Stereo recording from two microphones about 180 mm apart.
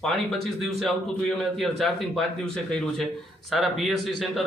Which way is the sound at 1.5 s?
Centre (ahead or behind).